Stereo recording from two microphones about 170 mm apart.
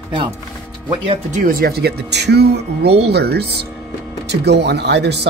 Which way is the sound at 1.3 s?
60° right (ahead or behind).